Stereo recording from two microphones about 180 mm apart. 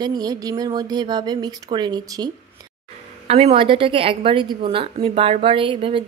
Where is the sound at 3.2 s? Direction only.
35° right (ahead or behind).